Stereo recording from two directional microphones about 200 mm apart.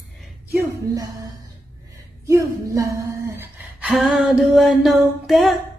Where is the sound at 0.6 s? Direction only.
15° right (ahead or behind); by 5.5 s centre (ahead or behind).